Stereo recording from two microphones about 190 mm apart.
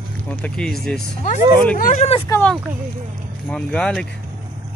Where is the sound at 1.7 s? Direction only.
45° left (ahead or behind).